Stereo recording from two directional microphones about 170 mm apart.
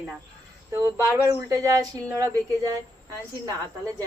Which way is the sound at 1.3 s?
20° right (ahead or behind).